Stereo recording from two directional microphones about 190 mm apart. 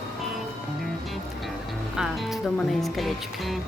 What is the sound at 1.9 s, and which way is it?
Speech, centre (ahead or behind).